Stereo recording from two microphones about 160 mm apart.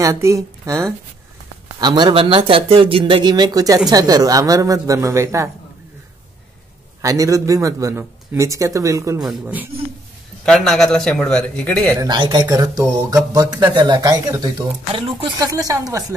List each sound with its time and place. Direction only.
0.0 s speech: 20° right (ahead or behind)
7.0 s speech: 20° right (ahead or behind)
10.4 s a man's voice: 5° left (ahead or behind)
12.0 s speech: 30° right (ahead or behind)
15.0 s speech: 35° right (ahead or behind)
15.3 s speech: 20° right (ahead or behind)